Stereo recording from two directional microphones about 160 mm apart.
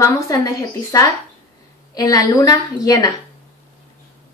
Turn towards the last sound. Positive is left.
turn(degrees=25)  # may be behind; listen again after turning